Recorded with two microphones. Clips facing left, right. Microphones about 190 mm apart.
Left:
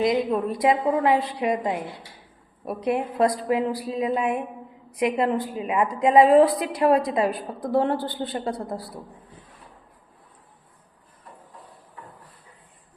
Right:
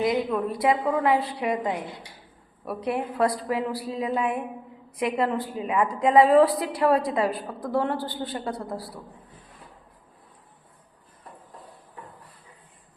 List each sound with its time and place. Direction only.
0.0 s a woman's voice: 25° left (ahead or behind)